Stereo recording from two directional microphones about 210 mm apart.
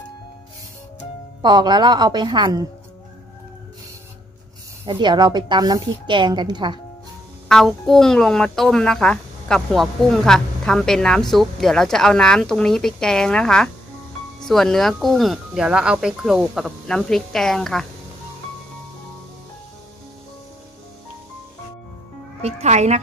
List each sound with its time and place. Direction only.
1.4 s a woman's voice: 20° right (ahead or behind)
4.8 s a woman's voice: 20° right (ahead or behind)
7.4 s speech: centre (ahead or behind)
22.4 s speech: 30° right (ahead or behind)